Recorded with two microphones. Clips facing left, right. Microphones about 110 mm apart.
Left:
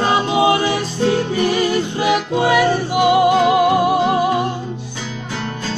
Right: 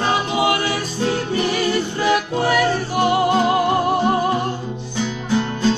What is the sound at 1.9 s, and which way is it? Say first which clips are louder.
Music: left 2 dB; 20° left (ahead or behind).